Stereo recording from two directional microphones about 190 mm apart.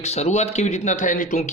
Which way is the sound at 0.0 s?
35° left (ahead or behind).